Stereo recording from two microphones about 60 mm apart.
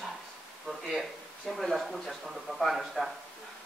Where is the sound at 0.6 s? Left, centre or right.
Centre.